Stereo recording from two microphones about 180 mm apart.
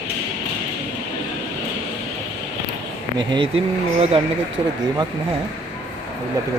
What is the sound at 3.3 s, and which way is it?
Speech, 30° right (ahead or behind).